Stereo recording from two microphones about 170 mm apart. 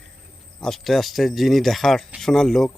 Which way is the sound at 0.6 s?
Centre (ahead or behind).